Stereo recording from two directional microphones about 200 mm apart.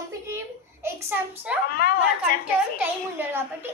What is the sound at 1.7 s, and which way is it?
Speech, 45° left (ahead or behind).